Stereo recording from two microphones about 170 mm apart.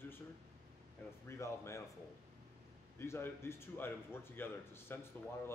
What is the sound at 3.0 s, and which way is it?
A man's voice, 15° left (ahead or behind).